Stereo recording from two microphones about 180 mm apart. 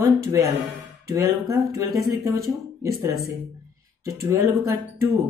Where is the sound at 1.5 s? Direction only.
20° right (ahead or behind).